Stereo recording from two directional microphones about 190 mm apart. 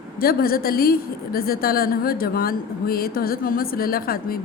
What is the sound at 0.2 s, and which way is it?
A woman's voice, 50° left (ahead or behind).